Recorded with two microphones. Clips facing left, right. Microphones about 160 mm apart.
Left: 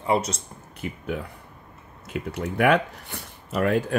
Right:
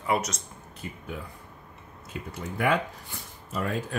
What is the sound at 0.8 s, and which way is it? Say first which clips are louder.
Speech: left 7 dB; 65° left (ahead or behind).